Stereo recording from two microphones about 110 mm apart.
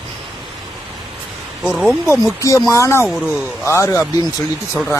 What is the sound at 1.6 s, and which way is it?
Speech, centre (ahead or behind).